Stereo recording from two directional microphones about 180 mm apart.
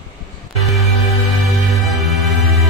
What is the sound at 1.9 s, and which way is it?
Music, centre (ahead or behind).